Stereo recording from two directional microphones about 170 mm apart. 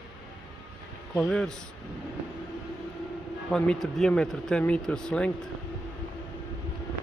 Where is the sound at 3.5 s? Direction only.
5° left (ahead or behind).